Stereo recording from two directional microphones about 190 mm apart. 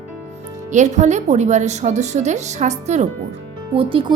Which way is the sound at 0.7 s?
40° right (ahead or behind).